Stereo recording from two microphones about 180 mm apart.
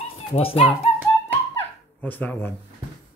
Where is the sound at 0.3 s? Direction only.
30° left (ahead or behind).